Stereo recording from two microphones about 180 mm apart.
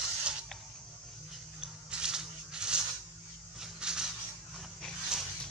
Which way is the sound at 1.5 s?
5° right (ahead or behind).